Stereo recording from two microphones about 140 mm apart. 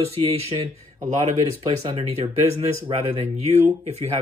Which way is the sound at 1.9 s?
45° right (ahead or behind).